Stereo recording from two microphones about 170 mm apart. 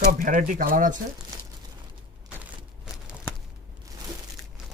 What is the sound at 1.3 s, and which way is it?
Crumpling, 20° right (ahead or behind).